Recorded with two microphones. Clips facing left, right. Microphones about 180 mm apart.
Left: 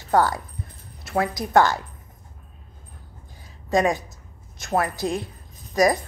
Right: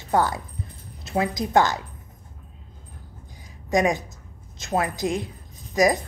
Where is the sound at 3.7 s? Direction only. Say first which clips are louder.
Left 1 dB; 20° right (ahead or behind).